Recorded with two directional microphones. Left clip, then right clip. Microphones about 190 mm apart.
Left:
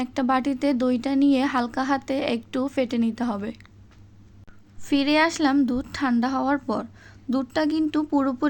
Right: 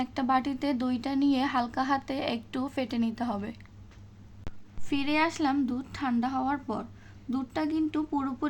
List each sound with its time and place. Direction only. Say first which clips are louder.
0.0 s speech: left 4 dB; 25° left (ahead or behind)
4.8 s a woman's voice: left 7 dB; 30° left (ahead or behind)